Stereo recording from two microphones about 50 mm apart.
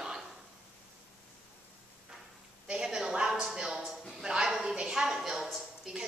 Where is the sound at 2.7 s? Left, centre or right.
Centre.